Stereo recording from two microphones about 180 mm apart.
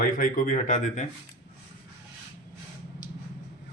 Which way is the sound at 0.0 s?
50° left (ahead or behind).